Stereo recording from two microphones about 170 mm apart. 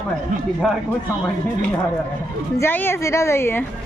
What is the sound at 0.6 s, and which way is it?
Speech, centre (ahead or behind).